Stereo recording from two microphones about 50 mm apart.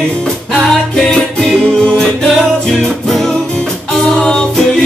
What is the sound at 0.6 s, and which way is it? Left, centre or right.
Music, centre.